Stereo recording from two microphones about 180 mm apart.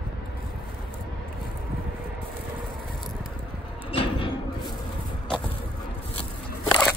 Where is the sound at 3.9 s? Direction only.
30° left (ahead or behind).